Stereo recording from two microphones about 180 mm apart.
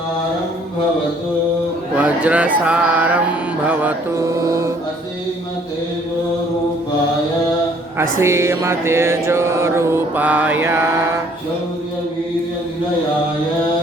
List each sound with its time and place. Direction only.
2.0 s mantra: 5° right (ahead or behind)
7.9 s mantra: 15° right (ahead or behind)